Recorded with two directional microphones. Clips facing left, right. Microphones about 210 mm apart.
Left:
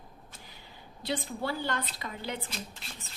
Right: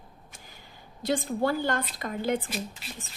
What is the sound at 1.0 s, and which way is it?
A woman's voice, 45° right (ahead or behind).